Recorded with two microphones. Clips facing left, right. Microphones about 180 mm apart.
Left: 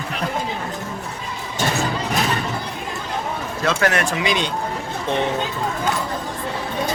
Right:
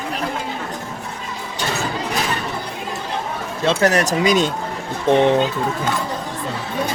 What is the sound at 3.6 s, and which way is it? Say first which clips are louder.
Speech: right 3 dB; 30° right (ahead or behind).